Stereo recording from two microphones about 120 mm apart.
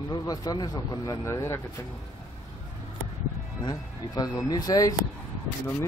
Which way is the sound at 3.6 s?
30° left (ahead or behind).